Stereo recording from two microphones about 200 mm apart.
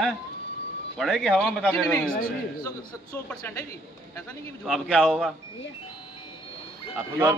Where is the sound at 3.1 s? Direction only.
10° left (ahead or behind).